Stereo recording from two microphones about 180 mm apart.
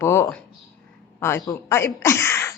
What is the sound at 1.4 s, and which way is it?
Speech, 15° left (ahead or behind).